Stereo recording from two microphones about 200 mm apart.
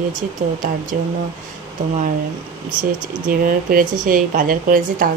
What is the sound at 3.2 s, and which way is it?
Speech, 45° right (ahead or behind).